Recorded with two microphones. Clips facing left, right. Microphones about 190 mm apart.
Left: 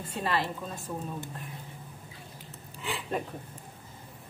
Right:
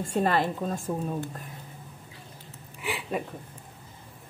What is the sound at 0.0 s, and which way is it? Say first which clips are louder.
Speech: right 6 dB; 45° right (ahead or behind).